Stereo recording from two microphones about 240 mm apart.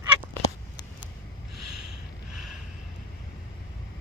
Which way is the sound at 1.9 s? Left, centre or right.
Left.